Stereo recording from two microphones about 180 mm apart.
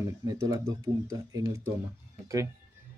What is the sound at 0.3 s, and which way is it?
Speech, 20° right (ahead or behind).